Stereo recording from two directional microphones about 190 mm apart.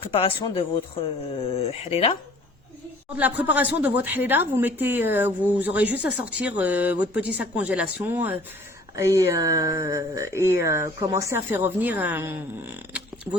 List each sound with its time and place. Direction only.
0.1 s speech: 30° left (ahead or behind)
3.2 s speech: 10° right (ahead or behind)